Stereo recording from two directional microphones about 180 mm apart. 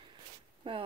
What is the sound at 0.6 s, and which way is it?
Speech, 25° right (ahead or behind).